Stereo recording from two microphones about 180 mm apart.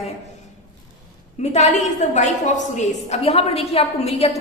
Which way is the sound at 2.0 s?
40° left (ahead or behind).